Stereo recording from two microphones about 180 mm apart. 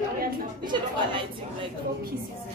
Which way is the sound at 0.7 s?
25° right (ahead or behind).